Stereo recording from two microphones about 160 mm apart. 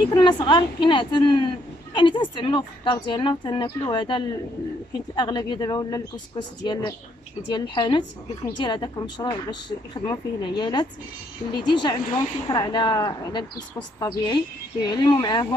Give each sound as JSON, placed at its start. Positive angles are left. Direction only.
{"t": 0.1, "sound": "speech", "side_deg": 25}